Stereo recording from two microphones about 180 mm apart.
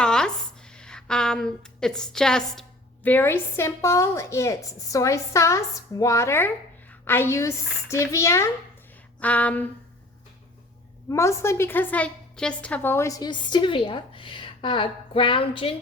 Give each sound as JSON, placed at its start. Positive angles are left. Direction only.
{"t": 0.0, "sound": "a sound", "side_deg": 5}
{"t": 0.8, "sound": "a woman's voice", "side_deg": 5}
{"t": 11.1, "sound": "a woman's voice", "side_deg": 15}